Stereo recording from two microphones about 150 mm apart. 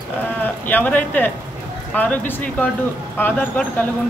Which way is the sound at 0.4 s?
10° left (ahead or behind).